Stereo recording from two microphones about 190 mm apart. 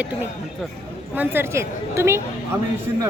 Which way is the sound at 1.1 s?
10° right (ahead or behind).